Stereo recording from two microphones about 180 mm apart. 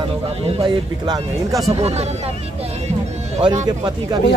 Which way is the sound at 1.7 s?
35° right (ahead or behind).